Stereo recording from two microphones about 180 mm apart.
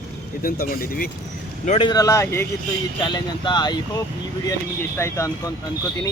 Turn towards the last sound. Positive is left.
turn(degrees=15)  # may be behind; listen again after turning